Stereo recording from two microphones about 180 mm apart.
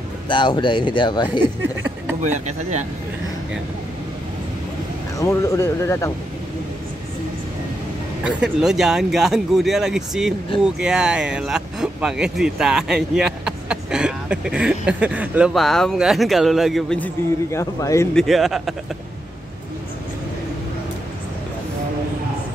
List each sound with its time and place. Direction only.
0.3 s speech: 25° left (ahead or behind)
1.6 s speech: 10° right (ahead or behind)
2.2 s speech: 40° right (ahead or behind)
5.2 s speech: 15° left (ahead or behind)
8.2 s speech: 5° right (ahead or behind); by 18.0 s 15° left (ahead or behind)
18.1 s speech: centre (ahead or behind)